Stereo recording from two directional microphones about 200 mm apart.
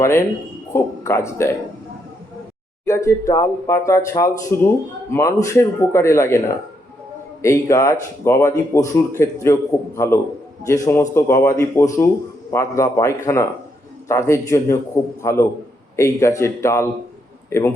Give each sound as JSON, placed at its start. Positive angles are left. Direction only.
{"t": 0.0, "sound": "a man's voice", "side_deg": 15}
{"t": 2.8, "sound": "speech", "side_deg": 15}
{"t": 7.4, "sound": "speech", "side_deg": 15}